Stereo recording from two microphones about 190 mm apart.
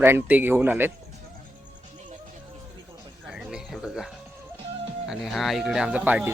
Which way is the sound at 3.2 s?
5° right (ahead or behind).